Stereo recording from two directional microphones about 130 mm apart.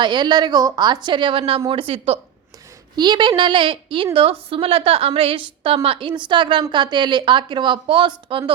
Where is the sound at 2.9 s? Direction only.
35° right (ahead or behind).